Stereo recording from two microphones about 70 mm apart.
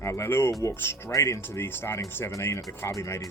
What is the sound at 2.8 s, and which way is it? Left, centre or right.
Speech, left.